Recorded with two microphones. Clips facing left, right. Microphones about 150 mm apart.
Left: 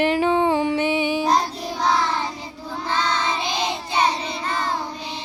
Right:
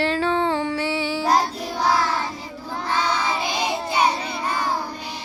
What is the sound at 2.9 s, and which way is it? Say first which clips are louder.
Child singing: even; 10° right (ahead or behind).